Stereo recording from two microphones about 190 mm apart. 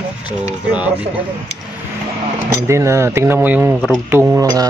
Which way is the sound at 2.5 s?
15° right (ahead or behind).